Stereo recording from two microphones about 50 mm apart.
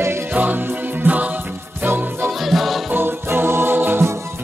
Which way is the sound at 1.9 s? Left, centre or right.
Right.